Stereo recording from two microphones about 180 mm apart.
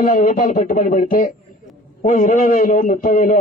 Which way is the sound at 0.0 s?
50° left (ahead or behind).